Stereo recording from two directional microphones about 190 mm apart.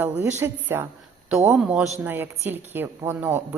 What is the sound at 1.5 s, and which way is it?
A man's voice, centre (ahead or behind).